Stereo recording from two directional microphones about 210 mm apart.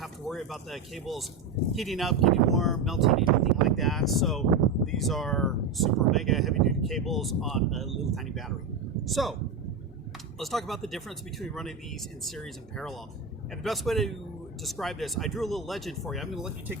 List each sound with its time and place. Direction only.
0.0 s speech: centre (ahead or behind)
10.4 s speech: centre (ahead or behind)
12.7 s speech: centre (ahead or behind)